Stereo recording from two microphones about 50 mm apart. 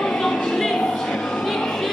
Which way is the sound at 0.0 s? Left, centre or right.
Centre.